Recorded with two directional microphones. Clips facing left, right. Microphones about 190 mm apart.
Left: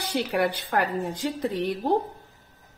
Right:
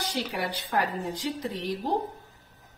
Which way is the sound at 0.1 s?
55° left (ahead or behind).